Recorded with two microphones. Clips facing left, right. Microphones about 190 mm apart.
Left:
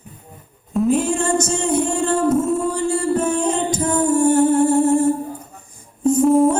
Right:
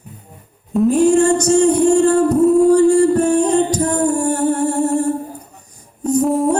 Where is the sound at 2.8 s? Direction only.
40° right (ahead or behind).